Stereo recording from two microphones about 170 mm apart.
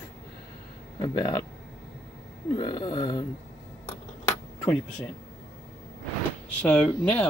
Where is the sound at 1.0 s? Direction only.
25° left (ahead or behind).